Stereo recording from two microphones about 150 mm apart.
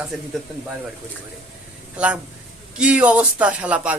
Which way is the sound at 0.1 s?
5° right (ahead or behind).